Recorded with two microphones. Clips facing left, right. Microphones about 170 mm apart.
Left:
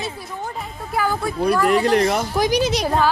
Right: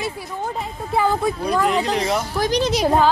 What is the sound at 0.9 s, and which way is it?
Speech, 20° right (ahead or behind).